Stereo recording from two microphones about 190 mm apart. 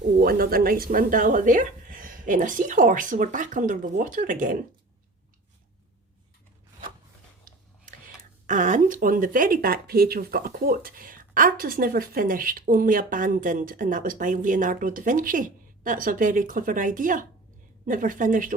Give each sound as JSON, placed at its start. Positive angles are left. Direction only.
{"t": 0.2, "sound": "speech", "side_deg": -50}
{"t": 7.9, "sound": "speech", "side_deg": -45}